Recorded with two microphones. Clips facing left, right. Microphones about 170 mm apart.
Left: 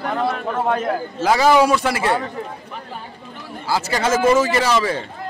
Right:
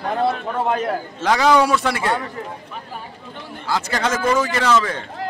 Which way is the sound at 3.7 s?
5° left (ahead or behind).